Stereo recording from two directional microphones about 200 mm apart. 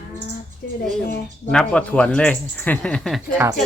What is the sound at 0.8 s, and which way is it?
Speech, 50° left (ahead or behind).